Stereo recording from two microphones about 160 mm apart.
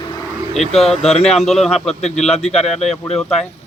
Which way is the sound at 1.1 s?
40° left (ahead or behind).